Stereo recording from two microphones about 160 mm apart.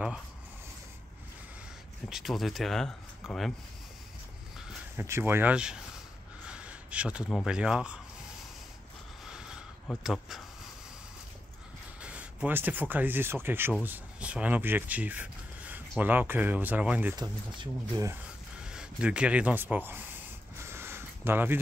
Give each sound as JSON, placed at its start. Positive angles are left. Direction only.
{"t": 2.0, "sound": "speech", "side_deg": 0}
{"t": 4.9, "sound": "speech", "side_deg": -15}
{"t": 6.5, "sound": "gasp", "side_deg": -5}
{"t": 7.2, "sound": "speech", "side_deg": 0}
{"t": 10.0, "sound": "speech", "side_deg": 0}
{"t": 12.0, "sound": "speech", "side_deg": -10}
{"t": 17.1, "sound": "speech", "side_deg": -25}
{"t": 18.6, "sound": "speech", "side_deg": -5}
{"t": 20.6, "sound": "a sound", "side_deg": -15}